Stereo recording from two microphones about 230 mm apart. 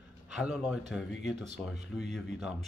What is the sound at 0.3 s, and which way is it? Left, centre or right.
Speech, centre.